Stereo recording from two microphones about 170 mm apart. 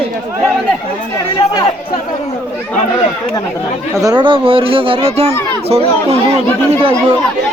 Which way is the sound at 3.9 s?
25° right (ahead or behind).